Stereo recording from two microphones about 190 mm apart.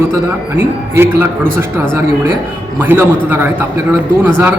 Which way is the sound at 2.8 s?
10° right (ahead or behind).